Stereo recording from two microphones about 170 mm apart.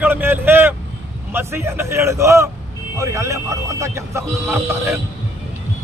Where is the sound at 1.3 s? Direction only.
15° right (ahead or behind).